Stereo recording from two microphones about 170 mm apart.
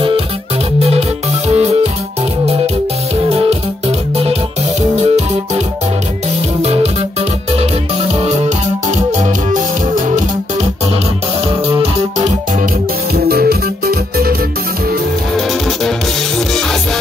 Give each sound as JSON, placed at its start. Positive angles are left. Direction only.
{"t": 0.7, "sound": "music", "side_deg": -35}
{"t": 3.3, "sound": "music", "side_deg": -35}
{"t": 6.6, "sound": "music", "side_deg": -35}
{"t": 11.4, "sound": "music", "side_deg": -35}
{"t": 13.1, "sound": "music", "side_deg": -65}